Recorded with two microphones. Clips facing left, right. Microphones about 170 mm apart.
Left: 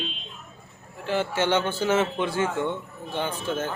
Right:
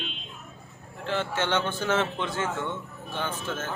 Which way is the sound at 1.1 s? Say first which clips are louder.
Left 4 dB; 10° left (ahead or behind).